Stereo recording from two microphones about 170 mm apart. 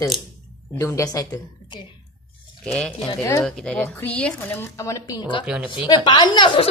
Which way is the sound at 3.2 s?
15° left (ahead or behind).